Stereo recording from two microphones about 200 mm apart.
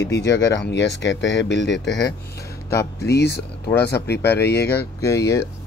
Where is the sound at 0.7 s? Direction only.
60° left (ahead or behind).